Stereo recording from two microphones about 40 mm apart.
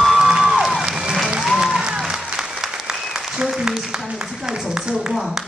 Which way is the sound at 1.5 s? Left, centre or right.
Centre.